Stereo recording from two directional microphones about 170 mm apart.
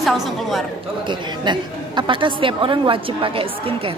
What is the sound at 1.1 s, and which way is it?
A woman's voice, 25° right (ahead or behind).